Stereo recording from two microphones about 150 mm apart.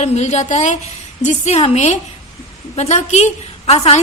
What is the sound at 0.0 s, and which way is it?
A woman's voice, 50° left (ahead or behind).